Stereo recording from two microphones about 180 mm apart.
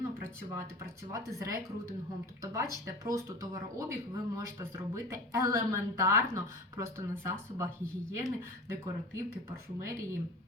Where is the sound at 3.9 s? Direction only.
15° right (ahead or behind).